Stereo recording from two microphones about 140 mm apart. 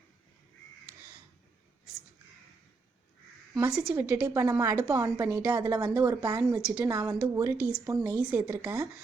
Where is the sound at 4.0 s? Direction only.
20° right (ahead or behind).